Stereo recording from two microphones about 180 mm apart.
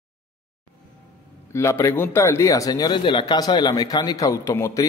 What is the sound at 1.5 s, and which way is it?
A man's voice, 15° left (ahead or behind).